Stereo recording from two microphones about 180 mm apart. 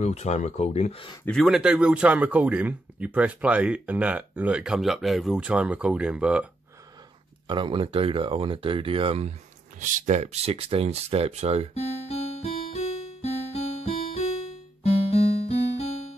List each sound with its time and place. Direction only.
0.0 s speech: 40° left (ahead or behind)
1.2 s a man's voice: centre (ahead or behind)
7.4 s speech: 30° right (ahead or behind)
9.8 s speech: 45° right (ahead or behind)
12.1 s music: 35° left (ahead or behind)